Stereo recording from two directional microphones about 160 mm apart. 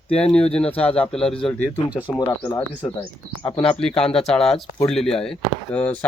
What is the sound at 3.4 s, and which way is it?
Speech, 35° left (ahead or behind).